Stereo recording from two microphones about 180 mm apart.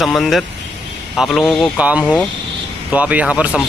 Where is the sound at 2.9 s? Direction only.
10° right (ahead or behind).